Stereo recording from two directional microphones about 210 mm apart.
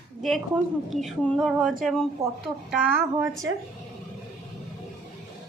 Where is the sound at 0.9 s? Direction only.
Centre (ahead or behind).